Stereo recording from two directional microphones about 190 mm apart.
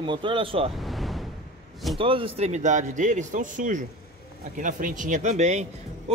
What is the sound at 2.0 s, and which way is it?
Speech, 30° right (ahead or behind).